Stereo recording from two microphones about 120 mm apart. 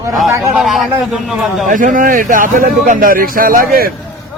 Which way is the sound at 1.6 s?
90° right.